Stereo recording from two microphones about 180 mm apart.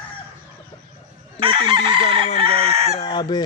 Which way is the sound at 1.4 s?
30° right (ahead or behind).